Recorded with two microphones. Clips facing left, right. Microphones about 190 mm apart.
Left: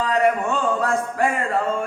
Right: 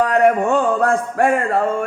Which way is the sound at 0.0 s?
60° right (ahead or behind).